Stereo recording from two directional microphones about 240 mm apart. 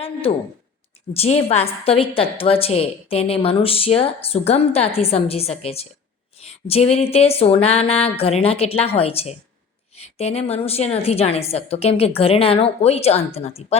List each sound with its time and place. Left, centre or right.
0.0 s a woman's voice: left